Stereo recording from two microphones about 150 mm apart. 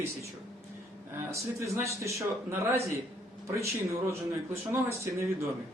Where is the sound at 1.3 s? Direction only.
20° right (ahead or behind).